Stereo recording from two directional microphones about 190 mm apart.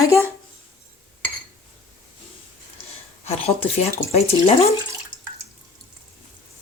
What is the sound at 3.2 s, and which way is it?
Speech, 35° left (ahead or behind).